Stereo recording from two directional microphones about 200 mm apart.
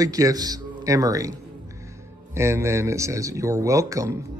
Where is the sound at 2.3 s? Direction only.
15° right (ahead or behind).